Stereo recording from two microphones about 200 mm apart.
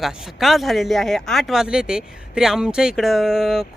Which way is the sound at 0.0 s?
Centre (ahead or behind).